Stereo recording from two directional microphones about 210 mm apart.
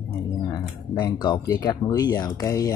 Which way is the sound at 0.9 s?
20° left (ahead or behind).